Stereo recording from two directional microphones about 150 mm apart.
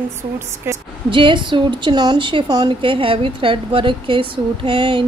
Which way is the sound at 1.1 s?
35° right (ahead or behind).